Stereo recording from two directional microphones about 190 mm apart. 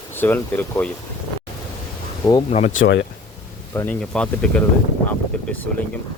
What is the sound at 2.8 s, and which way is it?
Speech, 70° left (ahead or behind).